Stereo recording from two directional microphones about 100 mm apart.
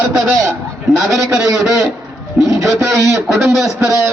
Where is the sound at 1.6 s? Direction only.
5° right (ahead or behind).